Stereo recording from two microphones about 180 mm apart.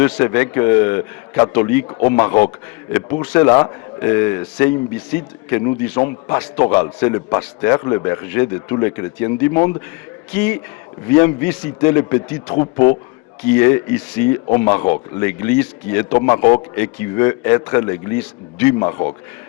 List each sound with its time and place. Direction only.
0.0 s a man's voice: 10° left (ahead or behind)